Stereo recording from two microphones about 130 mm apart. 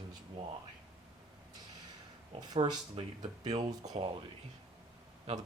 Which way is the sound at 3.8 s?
40° right (ahead or behind).